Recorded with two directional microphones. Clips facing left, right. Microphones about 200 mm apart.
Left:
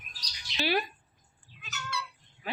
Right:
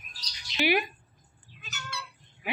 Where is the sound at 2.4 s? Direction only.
15° right (ahead or behind).